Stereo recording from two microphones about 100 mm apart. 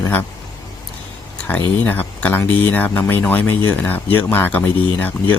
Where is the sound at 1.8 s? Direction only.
15° left (ahead or behind).